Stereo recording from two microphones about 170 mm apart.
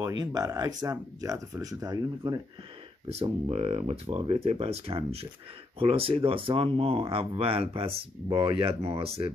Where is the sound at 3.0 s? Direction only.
35° right (ahead or behind).